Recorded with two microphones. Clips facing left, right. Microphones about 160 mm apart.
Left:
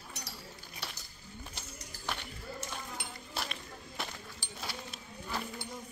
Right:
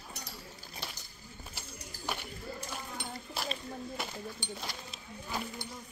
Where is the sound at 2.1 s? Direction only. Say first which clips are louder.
Right 1 dB; 10° right (ahead or behind).